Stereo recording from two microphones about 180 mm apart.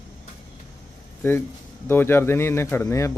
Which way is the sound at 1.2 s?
15° left (ahead or behind).